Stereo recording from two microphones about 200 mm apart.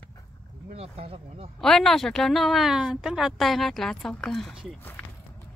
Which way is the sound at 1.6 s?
Centre (ahead or behind).